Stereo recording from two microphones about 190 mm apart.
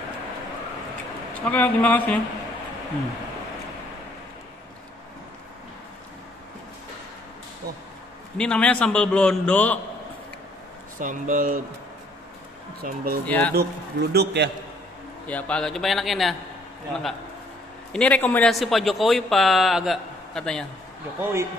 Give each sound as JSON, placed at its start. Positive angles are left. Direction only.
{"t": 1.4, "sound": "a man's voice", "side_deg": 10}
{"t": 8.4, "sound": "a man's voice", "side_deg": 5}
{"t": 11.0, "sound": "speech", "side_deg": -45}
{"t": 12.8, "sound": "a man's voice", "side_deg": -50}
{"t": 15.2, "sound": "a man's voice", "side_deg": 5}
{"t": 17.9, "sound": "a man's voice", "side_deg": 5}
{"t": 21.2, "sound": "a man's voice", "side_deg": -15}